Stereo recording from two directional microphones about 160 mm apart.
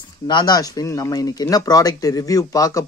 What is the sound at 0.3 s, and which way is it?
A man's voice, 25° left (ahead or behind).